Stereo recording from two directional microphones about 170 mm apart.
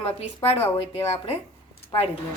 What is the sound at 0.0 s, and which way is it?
Speech, 35° left (ahead or behind).